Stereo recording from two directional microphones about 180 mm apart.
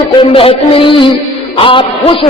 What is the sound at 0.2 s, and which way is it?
A man's voice, 30° left (ahead or behind).